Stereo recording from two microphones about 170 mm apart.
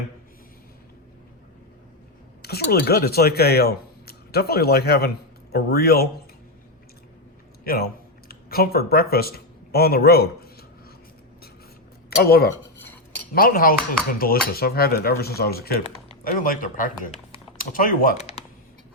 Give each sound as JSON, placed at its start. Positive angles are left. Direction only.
{"t": 2.4, "sound": "speech", "side_deg": 70}
{"t": 7.6, "sound": "speech", "side_deg": 60}
{"t": 12.2, "sound": "cutlery", "side_deg": 65}
{"t": 16.2, "sound": "speech", "side_deg": 55}
{"t": 17.7, "sound": "cutlery", "side_deg": 55}
{"t": 18.2, "sound": "a sound", "side_deg": 40}